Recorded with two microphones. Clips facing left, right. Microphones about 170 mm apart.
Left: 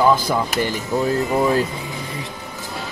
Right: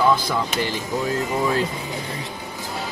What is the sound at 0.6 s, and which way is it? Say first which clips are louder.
Speech: left 4 dB; 45° left (ahead or behind).